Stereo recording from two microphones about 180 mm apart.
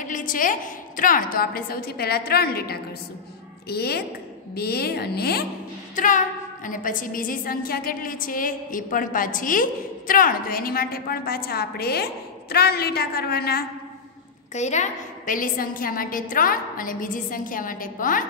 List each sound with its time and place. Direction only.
0.0 s a woman's voice: 50° left (ahead or behind)
5.9 s a woman's voice: 45° left (ahead or behind)
14.5 s a woman's voice: 40° left (ahead or behind)